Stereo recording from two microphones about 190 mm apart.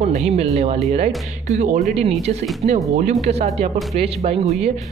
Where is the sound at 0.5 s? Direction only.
35° right (ahead or behind).